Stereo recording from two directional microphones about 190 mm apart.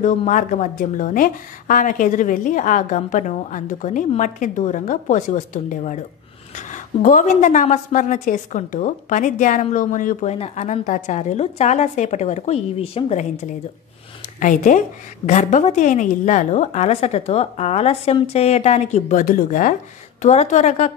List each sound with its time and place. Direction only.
0.0 s a woman's voice: 40° left (ahead or behind)